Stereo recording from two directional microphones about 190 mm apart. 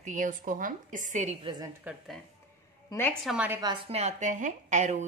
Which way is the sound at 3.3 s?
10° right (ahead or behind).